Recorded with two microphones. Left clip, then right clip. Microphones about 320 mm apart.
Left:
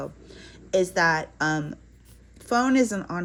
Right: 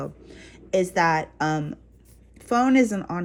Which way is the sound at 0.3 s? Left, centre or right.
Centre.